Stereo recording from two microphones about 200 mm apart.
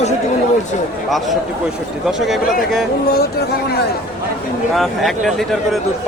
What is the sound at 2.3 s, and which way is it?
Speech, centre (ahead or behind).